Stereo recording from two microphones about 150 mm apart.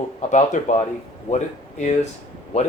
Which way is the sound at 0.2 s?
55° left (ahead or behind).